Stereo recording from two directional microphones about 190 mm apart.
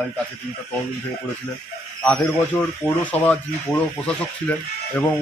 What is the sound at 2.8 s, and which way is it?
Speech, 10° left (ahead or behind).